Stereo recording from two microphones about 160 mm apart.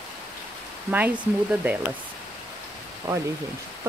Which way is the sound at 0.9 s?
10° right (ahead or behind).